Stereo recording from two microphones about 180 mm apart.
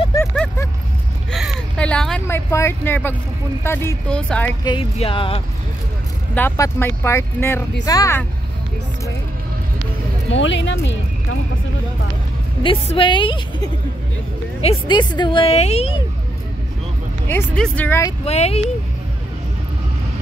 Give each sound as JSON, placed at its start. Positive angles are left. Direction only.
{"t": 1.3, "sound": "a sound", "side_deg": 0}
{"t": 3.6, "sound": "speech", "side_deg": 15}
{"t": 4.6, "sound": "a woman's voice", "side_deg": 30}
{"t": 6.3, "sound": "speech", "side_deg": 15}
{"t": 10.3, "sound": "speech", "side_deg": 90}
{"t": 12.6, "sound": "a woman's voice", "side_deg": 30}
{"t": 17.3, "sound": "speech", "side_deg": 10}
{"t": 18.2, "sound": "speech", "side_deg": 35}